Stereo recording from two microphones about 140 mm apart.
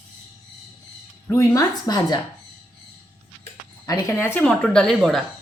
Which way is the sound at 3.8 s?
20° left (ahead or behind).